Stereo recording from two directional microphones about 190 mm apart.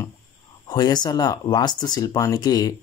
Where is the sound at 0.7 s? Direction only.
20° left (ahead or behind).